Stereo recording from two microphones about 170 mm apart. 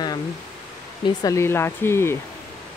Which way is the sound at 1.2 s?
15° left (ahead or behind).